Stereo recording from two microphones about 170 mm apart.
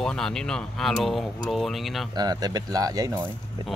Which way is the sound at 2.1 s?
25° right (ahead or behind).